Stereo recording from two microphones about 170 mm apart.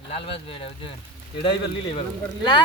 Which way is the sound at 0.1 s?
35° left (ahead or behind).